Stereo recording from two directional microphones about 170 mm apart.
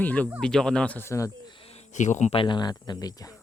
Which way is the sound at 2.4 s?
25° left (ahead or behind).